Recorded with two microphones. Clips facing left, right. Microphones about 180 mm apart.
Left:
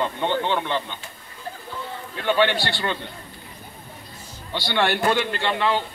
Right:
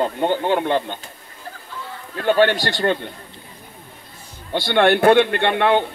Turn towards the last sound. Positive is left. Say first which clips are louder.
# right 6 dB
turn(degrees=-60)  # may be behind; listen again after turning